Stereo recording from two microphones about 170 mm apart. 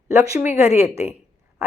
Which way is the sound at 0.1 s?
15° right (ahead or behind).